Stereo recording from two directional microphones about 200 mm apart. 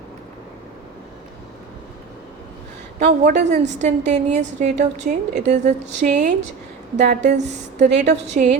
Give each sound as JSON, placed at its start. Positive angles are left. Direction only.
{"t": 3.0, "sound": "a woman's voice", "side_deg": -35}